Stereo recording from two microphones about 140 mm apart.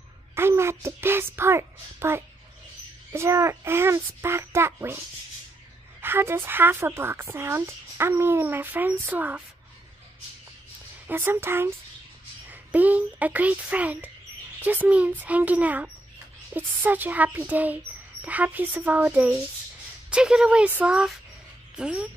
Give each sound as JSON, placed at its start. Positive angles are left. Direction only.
{"t": 0.3, "sound": "speech", "side_deg": -20}
{"t": 11.1, "sound": "speech", "side_deg": -15}